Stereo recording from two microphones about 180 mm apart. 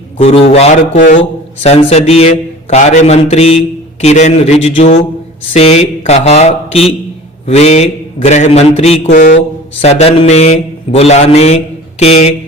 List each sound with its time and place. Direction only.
0.2 s a man's voice: 35° left (ahead or behind)